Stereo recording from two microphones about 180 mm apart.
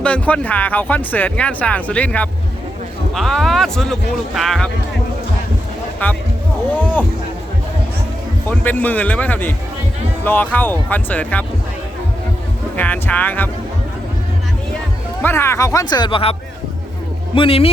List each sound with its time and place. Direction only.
0.0 s speech: 5° left (ahead or behind)
8.4 s speech: 10° left (ahead or behind)
12.7 s speech: 10° left (ahead or behind)
15.2 s speech: 15° left (ahead or behind)
17.3 s speech: 30° left (ahead or behind)